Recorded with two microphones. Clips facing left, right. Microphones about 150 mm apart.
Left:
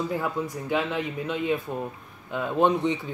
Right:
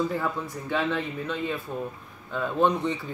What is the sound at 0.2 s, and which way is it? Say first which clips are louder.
Speech: left 2 dB; 15° left (ahead or behind).